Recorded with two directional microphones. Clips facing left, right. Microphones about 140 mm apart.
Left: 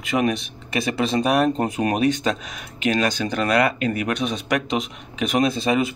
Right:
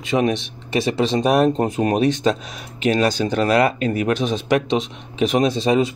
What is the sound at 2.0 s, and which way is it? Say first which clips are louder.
Speech: right 2 dB; 30° right (ahead or behind).